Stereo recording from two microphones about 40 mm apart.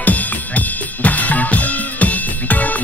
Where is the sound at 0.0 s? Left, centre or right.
Left.